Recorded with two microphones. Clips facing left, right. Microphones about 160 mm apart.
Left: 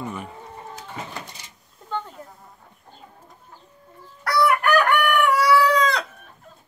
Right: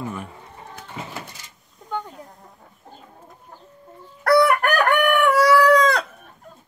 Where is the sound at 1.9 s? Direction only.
10° right (ahead or behind).